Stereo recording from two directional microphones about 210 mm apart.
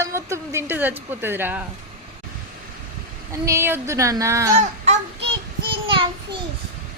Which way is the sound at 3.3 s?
15° right (ahead or behind).